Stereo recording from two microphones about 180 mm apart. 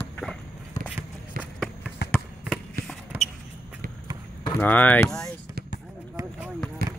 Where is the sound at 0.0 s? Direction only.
10° left (ahead or behind).